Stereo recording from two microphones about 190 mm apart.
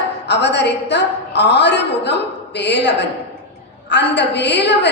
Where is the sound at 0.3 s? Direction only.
65° left (ahead or behind).